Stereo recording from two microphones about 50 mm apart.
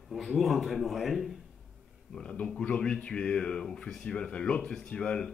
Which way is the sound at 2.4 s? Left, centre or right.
Centre.